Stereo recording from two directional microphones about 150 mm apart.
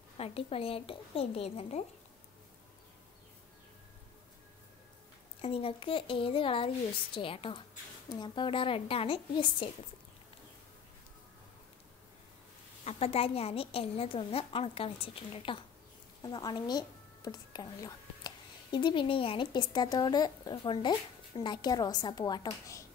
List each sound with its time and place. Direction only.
0.2 s a woman's voice: 40° left (ahead or behind)
5.4 s a woman's voice: 40° left (ahead or behind)
12.8 s a woman's voice: 40° left (ahead or behind); by 22.8 s 25° left (ahead or behind)